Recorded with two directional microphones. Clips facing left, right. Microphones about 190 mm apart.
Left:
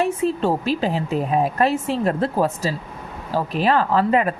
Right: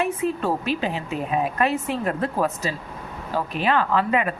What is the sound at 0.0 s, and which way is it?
Speech, 30° left (ahead or behind).